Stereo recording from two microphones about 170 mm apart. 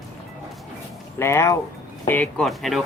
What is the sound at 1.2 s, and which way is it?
Speech, 15° left (ahead or behind).